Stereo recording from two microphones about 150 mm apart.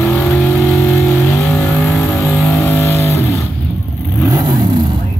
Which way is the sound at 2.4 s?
20° left (ahead or behind).